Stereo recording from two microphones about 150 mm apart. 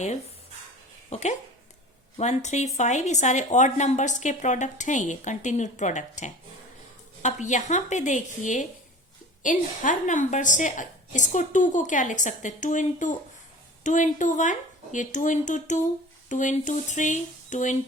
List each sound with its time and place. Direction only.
1.1 s a woman's voice: 50° left (ahead or behind)